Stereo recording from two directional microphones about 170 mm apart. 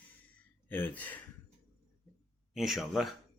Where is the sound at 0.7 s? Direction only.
10° left (ahead or behind).